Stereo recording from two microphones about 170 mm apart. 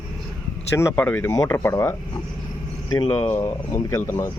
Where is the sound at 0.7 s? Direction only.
10° left (ahead or behind).